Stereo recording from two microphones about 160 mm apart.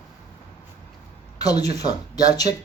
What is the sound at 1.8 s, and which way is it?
Speech, 25° left (ahead or behind).